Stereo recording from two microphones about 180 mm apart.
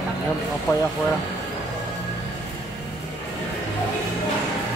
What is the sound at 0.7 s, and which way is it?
Speech, 20° left (ahead or behind).